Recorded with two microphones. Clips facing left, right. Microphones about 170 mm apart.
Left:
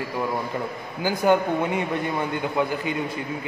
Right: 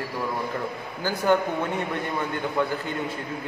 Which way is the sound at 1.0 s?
15° left (ahead or behind).